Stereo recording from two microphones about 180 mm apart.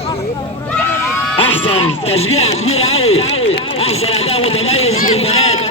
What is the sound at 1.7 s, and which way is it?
A man's voice, 35° left (ahead or behind).